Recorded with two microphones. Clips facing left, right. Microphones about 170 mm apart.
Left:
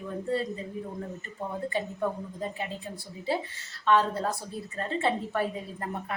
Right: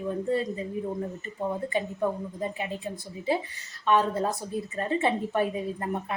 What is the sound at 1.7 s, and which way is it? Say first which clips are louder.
Speech: right 2 dB; 15° right (ahead or behind).